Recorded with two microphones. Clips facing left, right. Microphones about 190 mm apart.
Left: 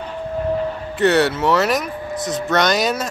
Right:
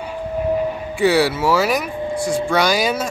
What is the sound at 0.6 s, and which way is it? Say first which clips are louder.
Speech: right 1 dB; 10° right (ahead or behind).